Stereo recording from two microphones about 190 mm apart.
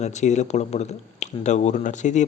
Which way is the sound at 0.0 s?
35° left (ahead or behind).